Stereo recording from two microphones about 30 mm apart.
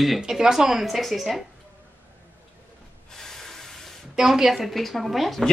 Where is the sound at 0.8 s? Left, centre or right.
Centre.